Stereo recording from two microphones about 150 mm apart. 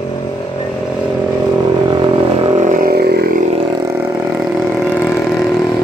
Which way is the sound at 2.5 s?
60° right (ahead or behind).